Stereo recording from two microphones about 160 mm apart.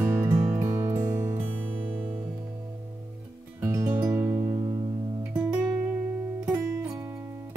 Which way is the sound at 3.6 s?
15° right (ahead or behind).